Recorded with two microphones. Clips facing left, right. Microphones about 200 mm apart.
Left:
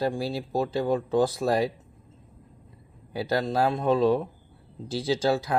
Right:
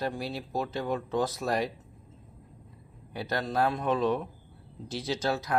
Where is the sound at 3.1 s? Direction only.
30° left (ahead or behind).